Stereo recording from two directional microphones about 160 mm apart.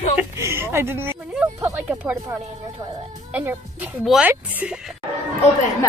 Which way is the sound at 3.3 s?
10° right (ahead or behind).